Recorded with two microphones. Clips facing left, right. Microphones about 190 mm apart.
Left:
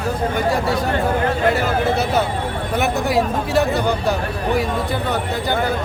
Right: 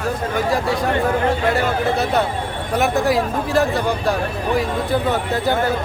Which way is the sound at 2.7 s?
Centre (ahead or behind).